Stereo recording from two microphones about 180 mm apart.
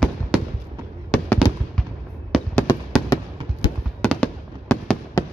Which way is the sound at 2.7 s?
15° left (ahead or behind).